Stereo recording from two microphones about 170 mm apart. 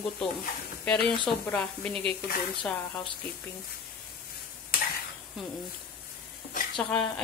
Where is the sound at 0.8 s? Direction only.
5° left (ahead or behind).